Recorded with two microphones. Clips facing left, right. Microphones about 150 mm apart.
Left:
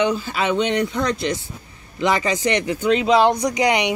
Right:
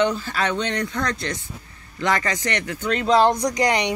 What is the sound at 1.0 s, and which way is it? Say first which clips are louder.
Speech: left 4 dB; 10° left (ahead or behind).